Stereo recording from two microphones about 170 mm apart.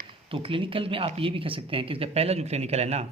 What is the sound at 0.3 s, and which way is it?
Speech, 30° right (ahead or behind).